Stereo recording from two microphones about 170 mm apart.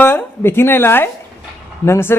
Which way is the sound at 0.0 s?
15° left (ahead or behind).